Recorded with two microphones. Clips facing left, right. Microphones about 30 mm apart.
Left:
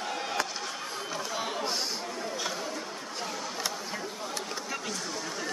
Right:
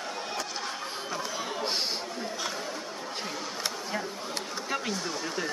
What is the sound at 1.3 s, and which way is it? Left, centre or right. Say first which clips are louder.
Chatter: left 1 dB; centre.